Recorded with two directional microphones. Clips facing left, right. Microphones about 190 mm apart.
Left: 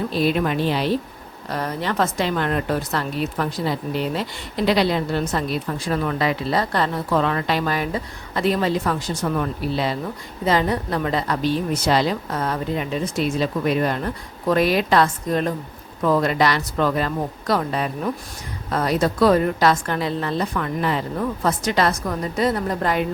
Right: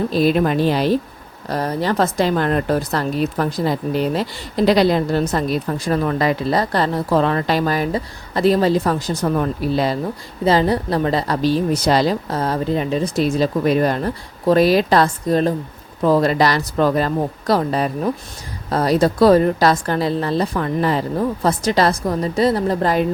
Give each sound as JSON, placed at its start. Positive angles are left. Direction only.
{"t": 0.1, "sound": "a woman's voice", "side_deg": -40}